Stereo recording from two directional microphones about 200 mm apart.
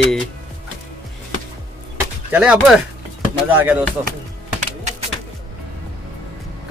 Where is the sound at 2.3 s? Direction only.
5° right (ahead or behind).